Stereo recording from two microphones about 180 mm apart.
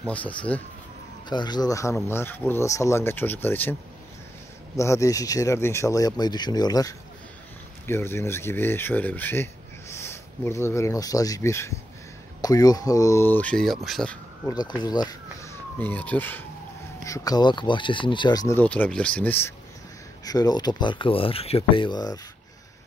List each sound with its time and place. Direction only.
0.0 s speech: 10° left (ahead or behind)
1.3 s speech: 25° left (ahead or behind)
4.7 s speech: 15° left (ahead or behind); by 14.1 s centre (ahead or behind)
14.4 s speech: 20° left (ahead or behind)
18.6 s speech: 10° left (ahead or behind)